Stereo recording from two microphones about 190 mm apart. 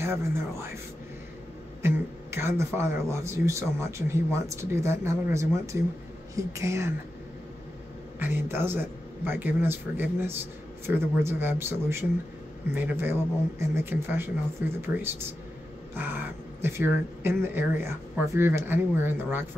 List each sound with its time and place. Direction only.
0.0 s speech: 15° right (ahead or behind)
1.8 s speech: 15° right (ahead or behind)
8.2 s speech: 10° right (ahead or behind)